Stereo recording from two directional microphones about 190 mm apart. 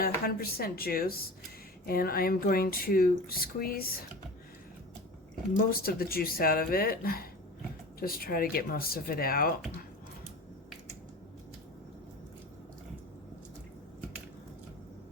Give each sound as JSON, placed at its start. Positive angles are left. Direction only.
{"t": 0.0, "sound": "speech", "side_deg": 50}
{"t": 5.7, "sound": "speech", "side_deg": 50}